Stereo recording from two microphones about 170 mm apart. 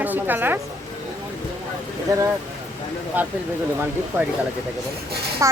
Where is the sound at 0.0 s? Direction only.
10° right (ahead or behind).